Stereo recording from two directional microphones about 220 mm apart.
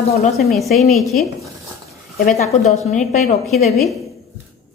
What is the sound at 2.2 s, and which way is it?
Speech, 30° left (ahead or behind).